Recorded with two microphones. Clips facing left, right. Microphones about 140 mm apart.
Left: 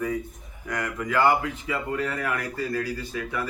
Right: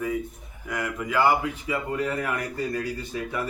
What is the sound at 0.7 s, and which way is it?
Speech, 10° right (ahead or behind).